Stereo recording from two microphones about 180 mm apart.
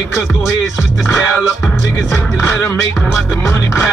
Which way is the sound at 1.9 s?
15° left (ahead or behind).